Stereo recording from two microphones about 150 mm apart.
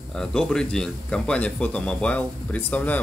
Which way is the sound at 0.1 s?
5° left (ahead or behind).